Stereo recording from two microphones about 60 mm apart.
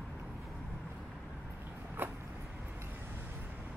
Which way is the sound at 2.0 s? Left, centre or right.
Right.